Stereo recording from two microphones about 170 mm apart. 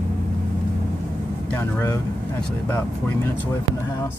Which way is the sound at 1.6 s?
15° left (ahead or behind).